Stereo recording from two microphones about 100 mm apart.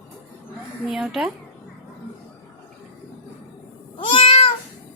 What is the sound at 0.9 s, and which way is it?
Speech, 5° right (ahead or behind).